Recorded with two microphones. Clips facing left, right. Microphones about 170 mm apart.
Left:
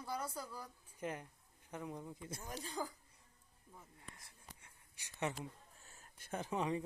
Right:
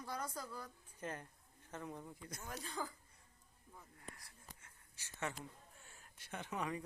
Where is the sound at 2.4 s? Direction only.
35° left (ahead or behind).